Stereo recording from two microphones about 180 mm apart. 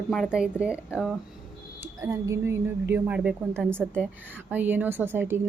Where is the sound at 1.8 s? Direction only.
20° right (ahead or behind).